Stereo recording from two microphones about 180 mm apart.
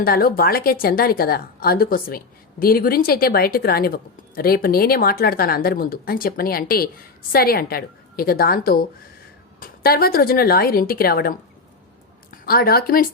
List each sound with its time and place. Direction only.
0.0 s a woman's voice: 55° left (ahead or behind)